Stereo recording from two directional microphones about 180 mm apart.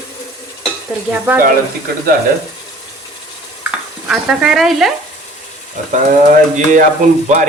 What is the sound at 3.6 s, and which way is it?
Stir, 5° right (ahead or behind).